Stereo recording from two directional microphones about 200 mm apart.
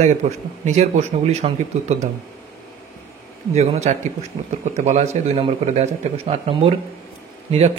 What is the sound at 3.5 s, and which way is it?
Speech, 35° right (ahead or behind).